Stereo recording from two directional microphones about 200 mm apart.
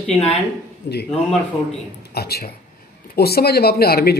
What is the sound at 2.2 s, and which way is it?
Speech, 50° left (ahead or behind).